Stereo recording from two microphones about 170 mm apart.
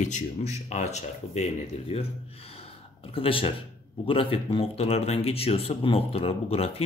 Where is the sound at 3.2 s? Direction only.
30° left (ahead or behind).